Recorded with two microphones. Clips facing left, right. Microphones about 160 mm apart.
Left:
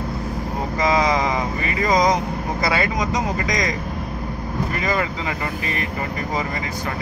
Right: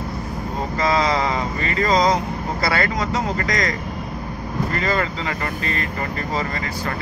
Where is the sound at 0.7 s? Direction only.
15° left (ahead or behind).